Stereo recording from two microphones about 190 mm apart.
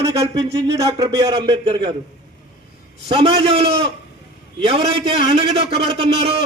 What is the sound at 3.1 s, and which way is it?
A man's voice, 30° right (ahead or behind).